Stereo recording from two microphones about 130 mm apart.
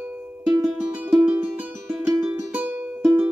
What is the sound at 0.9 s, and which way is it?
Music, 10° right (ahead or behind).